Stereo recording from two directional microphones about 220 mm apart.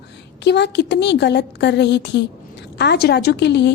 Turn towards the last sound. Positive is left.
turn(degrees=50)  # may be behind; listen again after turning